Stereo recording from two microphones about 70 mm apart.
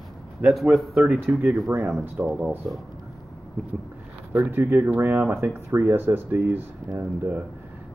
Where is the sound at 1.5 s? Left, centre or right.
Right.